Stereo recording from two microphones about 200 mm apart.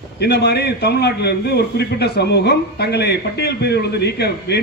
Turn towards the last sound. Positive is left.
turn(degrees=55)  # may be behind; listen again after turning